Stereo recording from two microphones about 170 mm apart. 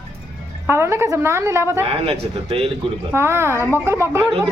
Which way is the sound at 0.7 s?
15° right (ahead or behind).